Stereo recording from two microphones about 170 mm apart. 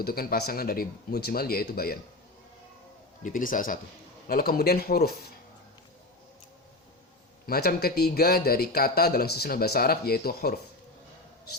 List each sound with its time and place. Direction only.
0.0 s speech: 60° left (ahead or behind)
3.2 s speech: 50° left (ahead or behind)
7.4 s speech: 60° left (ahead or behind)